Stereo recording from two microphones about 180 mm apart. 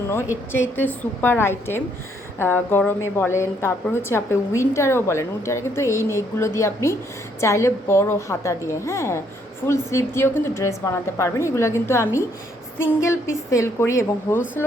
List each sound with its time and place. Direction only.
0.5 s a woman's voice: 10° left (ahead or behind)